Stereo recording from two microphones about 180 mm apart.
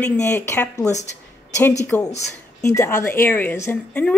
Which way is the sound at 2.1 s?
15° left (ahead or behind).